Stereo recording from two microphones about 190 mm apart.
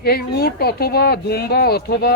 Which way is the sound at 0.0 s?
55° left (ahead or behind).